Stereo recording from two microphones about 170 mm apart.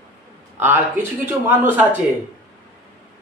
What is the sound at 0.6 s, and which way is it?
A man's voice, 10° right (ahead or behind).